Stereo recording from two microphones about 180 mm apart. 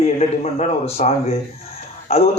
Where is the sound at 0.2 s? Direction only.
35° left (ahead or behind).